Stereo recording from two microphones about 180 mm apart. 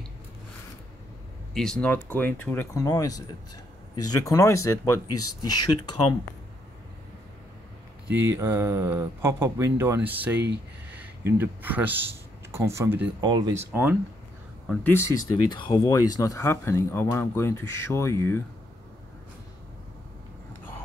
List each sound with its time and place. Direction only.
1.5 s speech: 5° left (ahead or behind); by 5.9 s 20° left (ahead or behind)
8.1 s speech: 90° right
8.4 s speech: 15° right (ahead or behind)
14.7 s speech: 10° left (ahead or behind)